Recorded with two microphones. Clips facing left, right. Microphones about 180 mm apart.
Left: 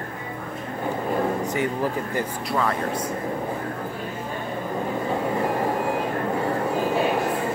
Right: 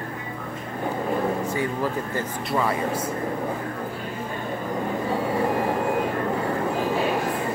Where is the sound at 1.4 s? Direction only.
20° left (ahead or behind).